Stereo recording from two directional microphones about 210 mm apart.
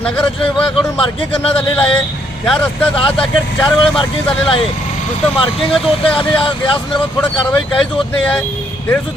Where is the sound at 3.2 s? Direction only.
25° left (ahead or behind).